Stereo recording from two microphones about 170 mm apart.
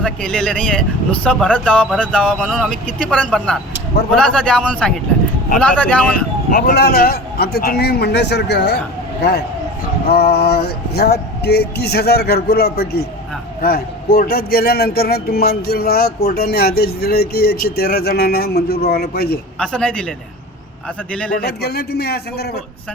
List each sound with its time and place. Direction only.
0.0 s a man's voice: 5° left (ahead or behind)
6.5 s male singing: 65° left (ahead or behind)
10.1 s male singing: 70° left (ahead or behind)
13.6 s speech: 60° left (ahead or behind)
18.9 s male singing: 65° left (ahead or behind)
19.5 s a man's voice: 5° left (ahead or behind)
21.3 s male singing: 70° left (ahead or behind)